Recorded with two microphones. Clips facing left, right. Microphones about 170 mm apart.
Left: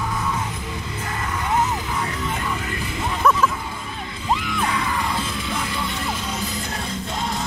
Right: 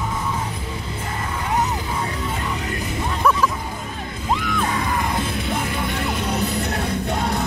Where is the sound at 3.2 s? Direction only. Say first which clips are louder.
Left 1 dB; 10° right (ahead or behind).